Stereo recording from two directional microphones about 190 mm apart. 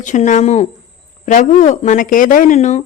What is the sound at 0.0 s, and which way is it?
Speech, 40° left (ahead or behind).